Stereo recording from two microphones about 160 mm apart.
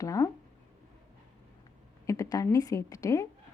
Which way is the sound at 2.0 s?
20° left (ahead or behind).